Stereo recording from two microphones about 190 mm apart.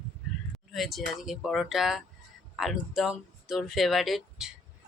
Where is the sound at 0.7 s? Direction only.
Centre (ahead or behind).